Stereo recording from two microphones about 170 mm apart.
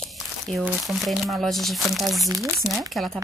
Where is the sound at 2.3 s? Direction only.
20° right (ahead or behind).